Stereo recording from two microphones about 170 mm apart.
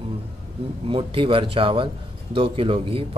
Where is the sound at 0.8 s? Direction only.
30° right (ahead or behind).